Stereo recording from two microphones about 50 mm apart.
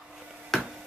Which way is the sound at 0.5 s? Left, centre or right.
Centre.